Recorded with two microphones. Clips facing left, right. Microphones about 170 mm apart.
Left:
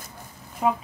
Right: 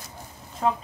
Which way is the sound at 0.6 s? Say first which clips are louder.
Left 1 dB; 10° left (ahead or behind).